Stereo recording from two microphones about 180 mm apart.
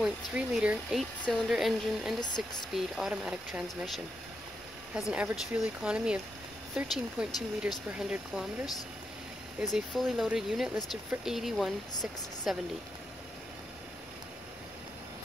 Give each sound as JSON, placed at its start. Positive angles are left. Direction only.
{"t": 0.0, "sound": "speech", "side_deg": -5}
{"t": 2.1, "sound": "speech", "side_deg": 25}
{"t": 2.7, "sound": "speech", "side_deg": -5}